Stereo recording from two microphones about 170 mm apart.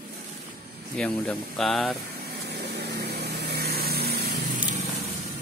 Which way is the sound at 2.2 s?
75° right (ahead or behind).